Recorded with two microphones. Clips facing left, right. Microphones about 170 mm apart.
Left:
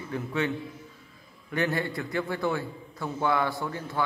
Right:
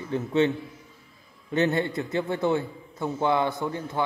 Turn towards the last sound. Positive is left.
turn(degrees=-20)  # may be behind; listen again after turning